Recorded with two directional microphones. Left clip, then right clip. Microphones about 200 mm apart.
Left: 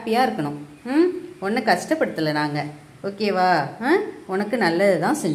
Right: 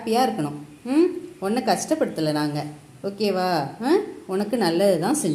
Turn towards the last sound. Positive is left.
turn(degrees=-10)  # may be behind; listen again after turning